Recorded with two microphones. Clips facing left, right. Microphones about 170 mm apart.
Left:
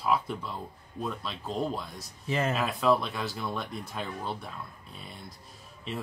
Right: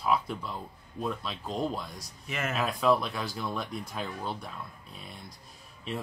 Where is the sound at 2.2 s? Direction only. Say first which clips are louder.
Left 6 dB; 30° left (ahead or behind).